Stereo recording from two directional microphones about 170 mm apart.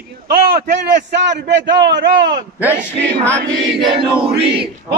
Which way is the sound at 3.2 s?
10° left (ahead or behind).